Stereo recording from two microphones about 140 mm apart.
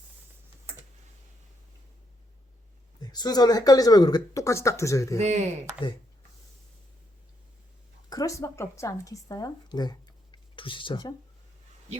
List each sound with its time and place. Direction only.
3.0 s speech: 30° left (ahead or behind)
5.2 s speech: 55° right (ahead or behind)
8.1 s speech: 25° left (ahead or behind)